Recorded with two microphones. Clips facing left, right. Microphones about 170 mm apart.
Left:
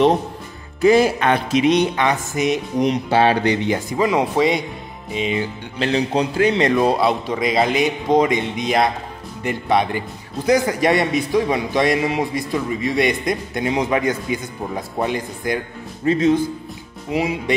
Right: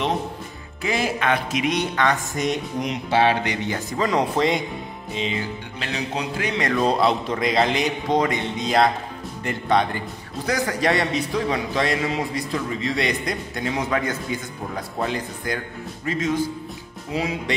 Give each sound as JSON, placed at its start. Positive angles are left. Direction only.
{"t": 0.8, "sound": "speech", "side_deg": 35}
{"t": 2.0, "sound": "speech", "side_deg": 10}
{"t": 2.8, "sound": "speech", "side_deg": 40}
{"t": 3.6, "sound": "a man's voice", "side_deg": 15}
{"t": 5.8, "sound": "speech", "side_deg": 30}
{"t": 6.7, "sound": "a man's voice", "side_deg": 10}
{"t": 7.0, "sound": "a man's voice", "side_deg": 0}
{"t": 16.1, "sound": "speech", "side_deg": 30}
{"t": 17.1, "sound": "a man's voice", "side_deg": 15}